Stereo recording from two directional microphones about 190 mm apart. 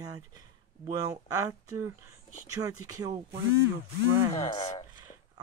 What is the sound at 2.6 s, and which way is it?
Speech, 20° right (ahead or behind).